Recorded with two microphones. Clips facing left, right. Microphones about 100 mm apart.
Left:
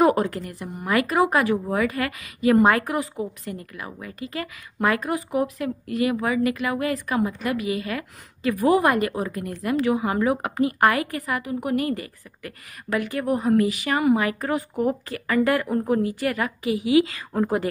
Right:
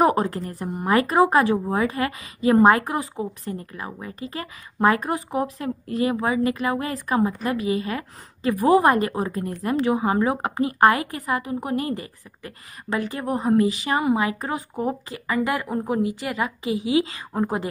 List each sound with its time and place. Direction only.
0.0 s a woman's voice: 30° right (ahead or behind)